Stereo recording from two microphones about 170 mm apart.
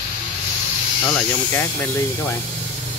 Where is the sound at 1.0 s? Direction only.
10° left (ahead or behind).